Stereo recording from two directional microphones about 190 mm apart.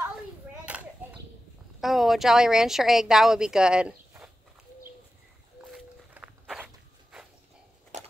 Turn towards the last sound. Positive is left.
turn(degrees=-5)  # may be behind; listen again after turning